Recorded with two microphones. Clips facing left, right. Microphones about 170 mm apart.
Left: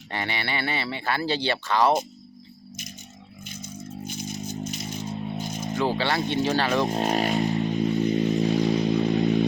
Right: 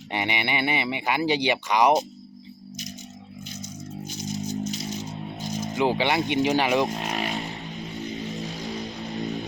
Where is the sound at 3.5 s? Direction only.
55° left (ahead or behind).